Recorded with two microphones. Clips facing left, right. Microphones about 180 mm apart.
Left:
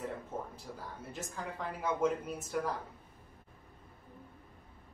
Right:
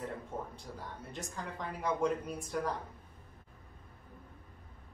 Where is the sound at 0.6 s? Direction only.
5° left (ahead or behind).